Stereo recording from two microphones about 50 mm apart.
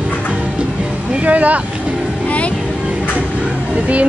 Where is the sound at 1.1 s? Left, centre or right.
Right.